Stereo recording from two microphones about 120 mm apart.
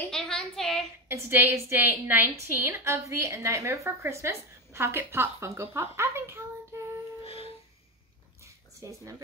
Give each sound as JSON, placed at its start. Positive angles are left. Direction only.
{"t": 0.1, "sound": "a woman's voice", "side_deg": 5}
{"t": 1.0, "sound": "a woman's voice", "side_deg": -20}
{"t": 7.2, "sound": "music", "side_deg": 50}
{"t": 8.8, "sound": "a woman's voice", "side_deg": -30}